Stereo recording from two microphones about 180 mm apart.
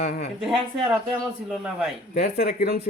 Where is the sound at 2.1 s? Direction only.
55° left (ahead or behind).